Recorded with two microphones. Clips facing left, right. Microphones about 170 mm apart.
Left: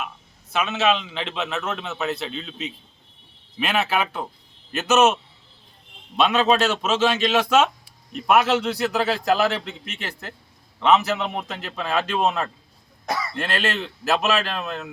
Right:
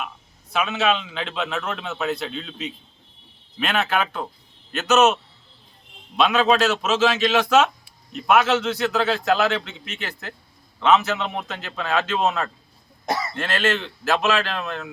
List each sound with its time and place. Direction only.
0.5 s a man's voice: centre (ahead or behind)
6.1 s a man's voice: 5° right (ahead or behind)
8.6 s a man's voice: 5° left (ahead or behind)
13.1 s cough: 20° right (ahead or behind)
13.4 s a man's voice: 5° left (ahead or behind)